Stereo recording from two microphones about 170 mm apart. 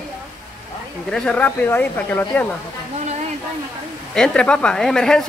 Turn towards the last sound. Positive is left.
turn(degrees=5)  # may be behind; listen again after turning